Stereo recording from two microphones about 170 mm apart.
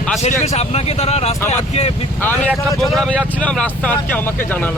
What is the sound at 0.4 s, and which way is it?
Speech, 35° left (ahead or behind).